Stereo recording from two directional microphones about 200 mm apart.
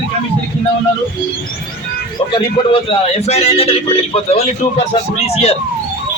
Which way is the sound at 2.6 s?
20° left (ahead or behind).